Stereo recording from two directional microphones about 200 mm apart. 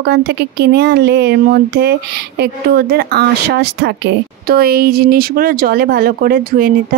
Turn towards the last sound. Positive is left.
turn(degrees=-45)  # may be behind; listen again after turning